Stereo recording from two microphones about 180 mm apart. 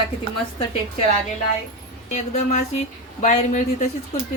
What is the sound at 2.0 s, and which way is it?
A woman's voice, 40° left (ahead or behind).